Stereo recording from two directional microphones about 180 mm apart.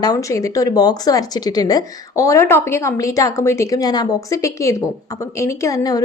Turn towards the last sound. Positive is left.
turn(degrees=20)  # may be behind; listen again after turning